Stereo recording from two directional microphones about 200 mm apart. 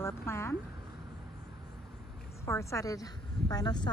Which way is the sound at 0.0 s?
10° left (ahead or behind).